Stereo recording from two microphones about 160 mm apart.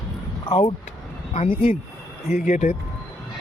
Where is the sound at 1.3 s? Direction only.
35° left (ahead or behind).